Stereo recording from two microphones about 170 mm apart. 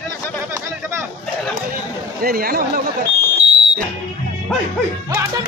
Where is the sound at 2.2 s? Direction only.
60° right (ahead or behind).